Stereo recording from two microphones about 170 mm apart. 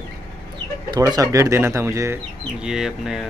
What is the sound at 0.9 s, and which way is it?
Speech, 20° right (ahead or behind).